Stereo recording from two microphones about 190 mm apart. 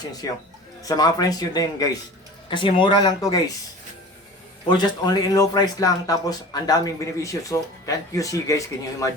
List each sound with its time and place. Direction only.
0.0 s speech: 20° left (ahead or behind)
4.8 s speech: 20° left (ahead or behind)